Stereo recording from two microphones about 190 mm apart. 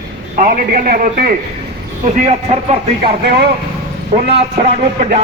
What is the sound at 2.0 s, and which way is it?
Speech, 35° right (ahead or behind).